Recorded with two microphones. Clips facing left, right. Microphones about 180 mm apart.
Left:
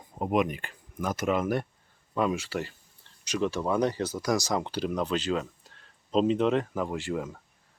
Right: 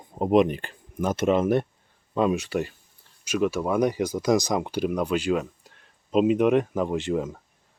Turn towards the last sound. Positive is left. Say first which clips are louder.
# right 6 dB
turn(degrees=-20)  # may be behind; listen again after turning